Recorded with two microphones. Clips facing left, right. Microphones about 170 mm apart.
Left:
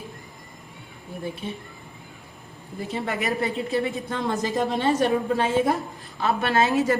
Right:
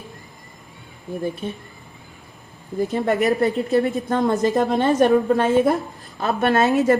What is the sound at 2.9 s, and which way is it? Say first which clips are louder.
A woman's voice: right 7 dB; 45° right (ahead or behind).